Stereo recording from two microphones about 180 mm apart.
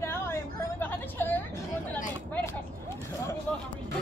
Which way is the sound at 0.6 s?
10° left (ahead or behind).